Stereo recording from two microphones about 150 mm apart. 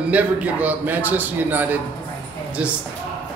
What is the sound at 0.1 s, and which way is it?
A man's voice, 10° right (ahead or behind).